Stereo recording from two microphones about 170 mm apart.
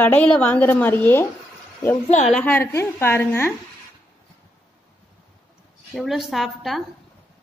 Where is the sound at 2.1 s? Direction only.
45° left (ahead or behind).